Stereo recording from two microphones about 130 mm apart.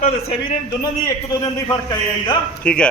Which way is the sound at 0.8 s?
30° left (ahead or behind).